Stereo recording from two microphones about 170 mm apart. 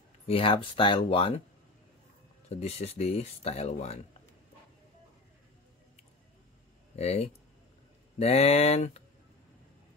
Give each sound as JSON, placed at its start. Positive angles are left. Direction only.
{"t": 0.3, "sound": "speech", "side_deg": 30}
{"t": 2.5, "sound": "speech", "side_deg": 40}
{"t": 7.0, "sound": "speech", "side_deg": 40}